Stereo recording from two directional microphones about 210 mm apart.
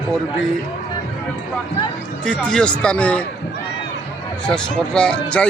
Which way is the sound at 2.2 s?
5° left (ahead or behind).